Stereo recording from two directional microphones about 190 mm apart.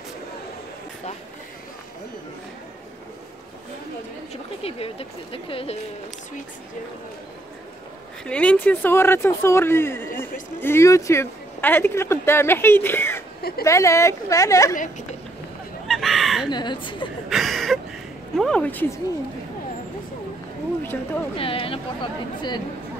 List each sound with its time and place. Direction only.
4.3 s speech: 30° left (ahead or behind)
8.3 s speech: 5° left (ahead or behind)
13.4 s speech: 55° left (ahead or behind)
13.7 s speech: 15° left (ahead or behind)
14.8 s speech: 40° left (ahead or behind)
15.9 s a sound: centre (ahead or behind)
16.4 s speech: 25° left (ahead or behind)
17.3 s a sound: centre (ahead or behind)
18.3 s a woman's voice: 5° left (ahead or behind)
20.8 s speech: 10° left (ahead or behind)
21.4 s speech: 30° left (ahead or behind)